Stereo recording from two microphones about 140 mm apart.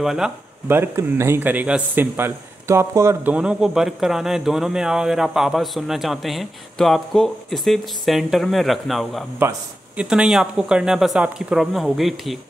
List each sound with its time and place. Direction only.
0.0 s a man's voice: 5° right (ahead or behind)
0.7 s a man's voice: 20° right (ahead or behind); by 9.2 s centre (ahead or behind)
9.4 s a man's voice: 15° right (ahead or behind)